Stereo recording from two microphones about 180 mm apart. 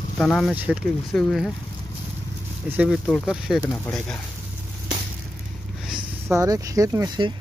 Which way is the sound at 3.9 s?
10° left (ahead or behind).